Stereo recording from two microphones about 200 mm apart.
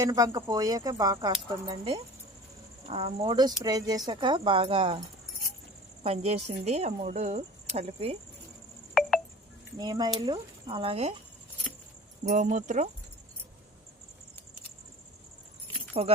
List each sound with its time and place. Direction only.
0.0 s speech: 20° right (ahead or behind)
9.0 s a sound: centre (ahead or behind)
9.7 s speech: 20° right (ahead or behind)
12.2 s speech: 40° right (ahead or behind)
15.9 s speech: 30° right (ahead or behind)